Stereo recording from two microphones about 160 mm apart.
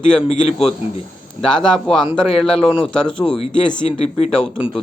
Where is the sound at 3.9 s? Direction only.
40° left (ahead or behind).